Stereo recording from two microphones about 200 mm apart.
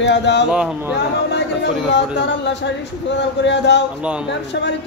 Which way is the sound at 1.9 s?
60° left (ahead or behind).